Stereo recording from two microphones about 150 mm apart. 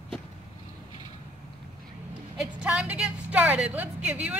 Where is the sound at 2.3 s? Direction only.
5° right (ahead or behind).